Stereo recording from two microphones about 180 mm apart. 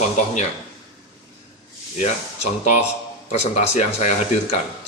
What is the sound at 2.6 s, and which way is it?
Speech, 40° left (ahead or behind).